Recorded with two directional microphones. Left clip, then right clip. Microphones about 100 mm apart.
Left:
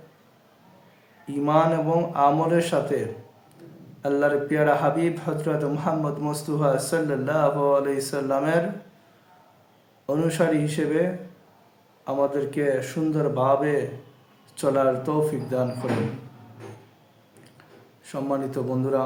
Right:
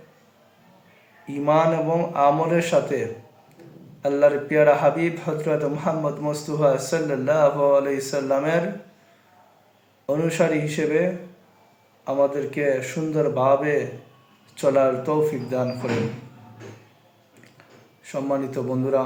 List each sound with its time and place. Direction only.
1.3 s a man's voice: 20° left (ahead or behind)
10.1 s a man's voice: 20° left (ahead or behind)
18.0 s a man's voice: 20° left (ahead or behind)